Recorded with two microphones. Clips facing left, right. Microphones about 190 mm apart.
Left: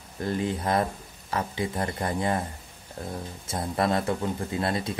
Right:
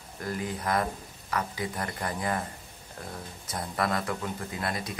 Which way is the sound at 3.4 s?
25° left (ahead or behind).